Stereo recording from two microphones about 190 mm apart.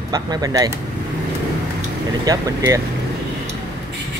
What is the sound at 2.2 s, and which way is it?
Speech, 20° right (ahead or behind).